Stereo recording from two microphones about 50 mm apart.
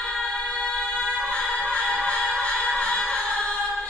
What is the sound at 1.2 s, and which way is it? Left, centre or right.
Music, left.